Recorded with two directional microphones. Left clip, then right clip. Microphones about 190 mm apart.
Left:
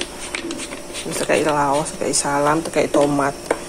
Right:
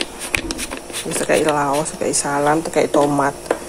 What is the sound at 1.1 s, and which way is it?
A woman's voice, 10° right (ahead or behind).